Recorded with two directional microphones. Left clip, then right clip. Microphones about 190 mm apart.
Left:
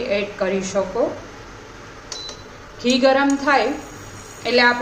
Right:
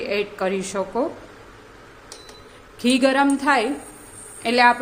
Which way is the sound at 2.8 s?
65° right (ahead or behind).